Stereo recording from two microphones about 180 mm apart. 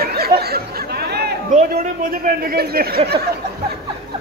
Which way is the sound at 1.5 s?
40° right (ahead or behind).